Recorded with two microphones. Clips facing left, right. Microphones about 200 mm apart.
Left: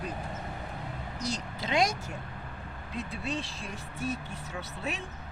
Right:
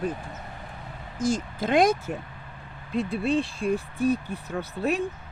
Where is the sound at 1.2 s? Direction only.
50° right (ahead or behind).